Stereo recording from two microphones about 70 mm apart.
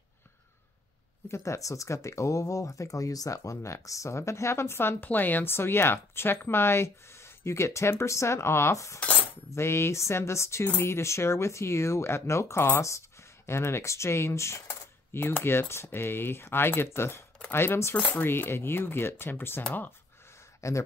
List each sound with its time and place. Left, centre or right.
1.3 s speech: left
15.1 s speech: left
20.6 s speech: left